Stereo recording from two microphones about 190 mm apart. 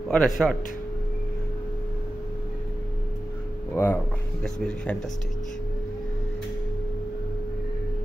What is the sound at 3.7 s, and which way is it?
Speech, 10° left (ahead or behind).